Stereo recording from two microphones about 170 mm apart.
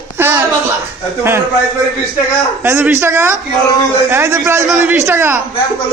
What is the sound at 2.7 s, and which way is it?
A man's voice, 15° right (ahead or behind).